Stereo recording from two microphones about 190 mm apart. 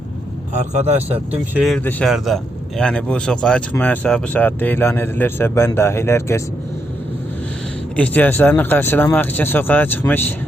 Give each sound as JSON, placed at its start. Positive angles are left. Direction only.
{"t": 0.5, "sound": "speech", "side_deg": -40}
{"t": 1.5, "sound": "speech", "side_deg": 0}
{"t": 7.9, "sound": "speech", "side_deg": 10}